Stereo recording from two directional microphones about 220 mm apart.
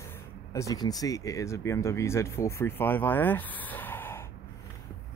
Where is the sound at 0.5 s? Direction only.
15° left (ahead or behind).